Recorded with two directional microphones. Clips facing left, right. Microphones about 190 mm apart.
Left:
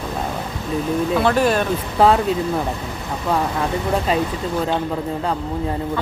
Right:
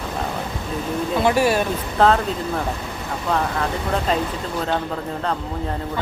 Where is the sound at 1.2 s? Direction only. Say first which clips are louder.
Right 1 dB; 10° right (ahead or behind).